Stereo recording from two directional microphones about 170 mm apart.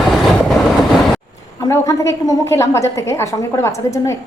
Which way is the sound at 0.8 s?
Centre (ahead or behind).